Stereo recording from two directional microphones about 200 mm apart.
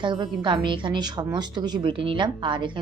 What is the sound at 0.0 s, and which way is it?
A woman's voice, 25° right (ahead or behind).